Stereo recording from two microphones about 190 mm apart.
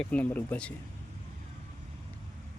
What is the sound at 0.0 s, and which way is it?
Speech, 5° left (ahead or behind).